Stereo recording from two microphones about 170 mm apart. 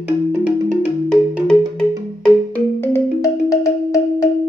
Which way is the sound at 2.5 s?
15° left (ahead or behind).